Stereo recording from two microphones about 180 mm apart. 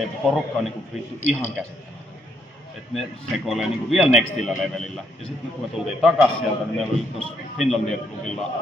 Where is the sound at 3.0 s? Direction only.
Centre (ahead or behind).